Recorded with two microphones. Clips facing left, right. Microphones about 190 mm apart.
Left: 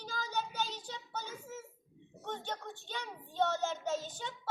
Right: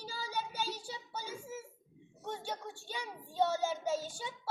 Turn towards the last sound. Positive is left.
turn(degrees=-10)  # may be behind; listen again after turning